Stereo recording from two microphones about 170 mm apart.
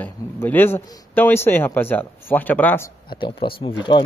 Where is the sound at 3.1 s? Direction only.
30° left (ahead or behind).